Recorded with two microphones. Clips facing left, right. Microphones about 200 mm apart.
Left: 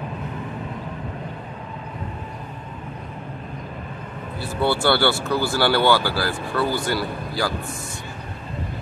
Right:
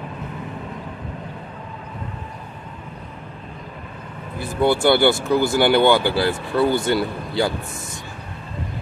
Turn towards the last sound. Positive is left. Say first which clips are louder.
# right 3 dB
turn(degrees=-25)  # may be behind; listen again after turning